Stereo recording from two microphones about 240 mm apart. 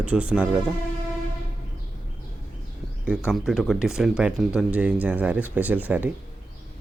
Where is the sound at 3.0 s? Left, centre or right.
Centre.